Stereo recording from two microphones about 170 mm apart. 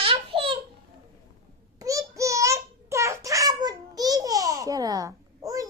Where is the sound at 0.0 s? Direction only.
35° right (ahead or behind).